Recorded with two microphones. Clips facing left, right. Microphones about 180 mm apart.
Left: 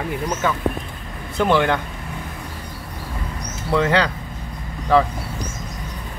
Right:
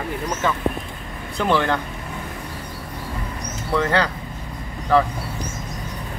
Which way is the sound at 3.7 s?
15° left (ahead or behind).